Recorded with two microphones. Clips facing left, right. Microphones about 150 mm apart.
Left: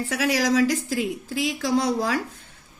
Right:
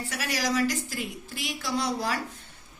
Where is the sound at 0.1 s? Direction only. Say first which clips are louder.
Left 7 dB; 90° left.